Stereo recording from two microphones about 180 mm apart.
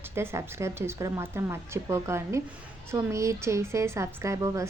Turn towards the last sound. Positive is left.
turn(degrees=-15)  # may be behind; listen again after turning